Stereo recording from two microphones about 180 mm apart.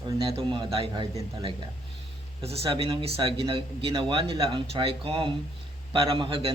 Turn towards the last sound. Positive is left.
turn(degrees=-30)  # may be behind; listen again after turning